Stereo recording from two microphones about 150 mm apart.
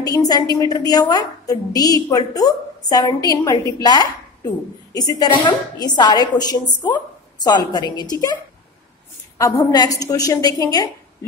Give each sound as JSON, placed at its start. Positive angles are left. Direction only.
{"t": 0.0, "sound": "a woman's voice", "side_deg": 25}
{"t": 9.4, "sound": "a woman's voice", "side_deg": 25}